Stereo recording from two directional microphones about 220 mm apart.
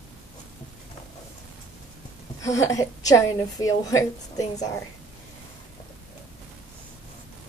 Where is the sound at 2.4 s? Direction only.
15° left (ahead or behind).